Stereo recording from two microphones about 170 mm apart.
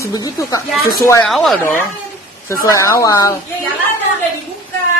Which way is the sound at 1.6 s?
15° left (ahead or behind).